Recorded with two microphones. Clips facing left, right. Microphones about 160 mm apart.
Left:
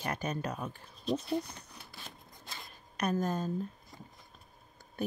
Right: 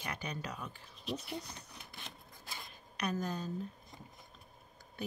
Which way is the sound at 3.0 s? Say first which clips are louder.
Left 5 dB; 45° left (ahead or behind).